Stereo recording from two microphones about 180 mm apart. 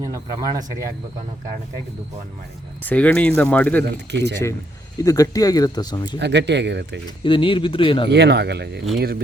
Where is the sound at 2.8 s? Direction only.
10° left (ahead or behind).